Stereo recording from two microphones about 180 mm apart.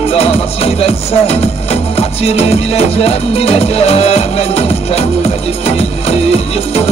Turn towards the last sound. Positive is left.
turn(degrees=35)  # may be behind; listen again after turning